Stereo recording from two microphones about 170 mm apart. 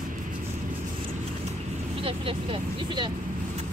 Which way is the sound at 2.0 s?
35° right (ahead or behind).